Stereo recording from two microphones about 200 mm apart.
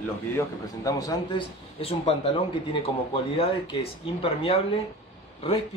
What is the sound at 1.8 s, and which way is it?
A man's voice, 30° left (ahead or behind).